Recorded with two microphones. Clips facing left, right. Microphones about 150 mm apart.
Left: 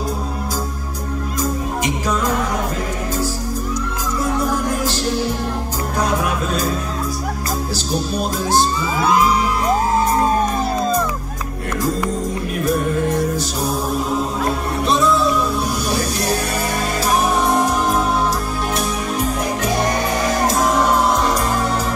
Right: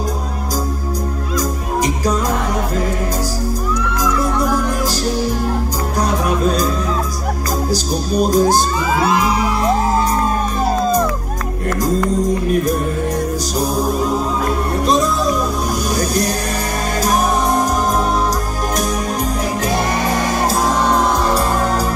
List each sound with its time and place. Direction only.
1.4 s music: 40° right (ahead or behind)
4.8 s music: 40° right (ahead or behind)
7.7 s music: 40° right (ahead or behind)
14.9 s music: 40° right (ahead or behind)